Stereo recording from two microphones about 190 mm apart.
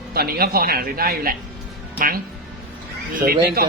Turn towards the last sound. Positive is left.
turn(degrees=-50)  # may be behind; listen again after turning